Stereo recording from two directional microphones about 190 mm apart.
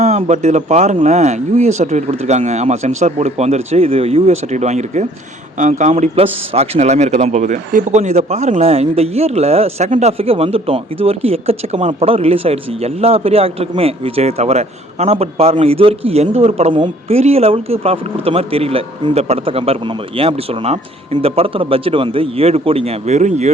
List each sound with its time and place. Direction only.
0.0 s a man's voice: 35° right (ahead or behind)